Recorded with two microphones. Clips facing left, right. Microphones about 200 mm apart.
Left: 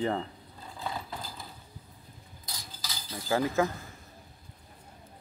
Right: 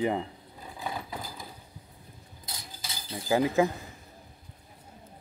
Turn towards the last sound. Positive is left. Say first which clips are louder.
# right 3 dB
turn(degrees=-15)  # may be behind; listen again after turning